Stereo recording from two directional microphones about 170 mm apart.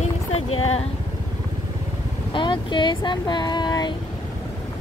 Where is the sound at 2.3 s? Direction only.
30° left (ahead or behind).